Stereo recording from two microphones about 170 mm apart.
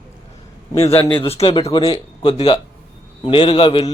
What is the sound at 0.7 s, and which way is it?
Speech, 15° left (ahead or behind).